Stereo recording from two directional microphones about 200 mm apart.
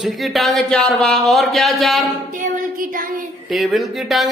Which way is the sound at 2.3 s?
40° right (ahead or behind).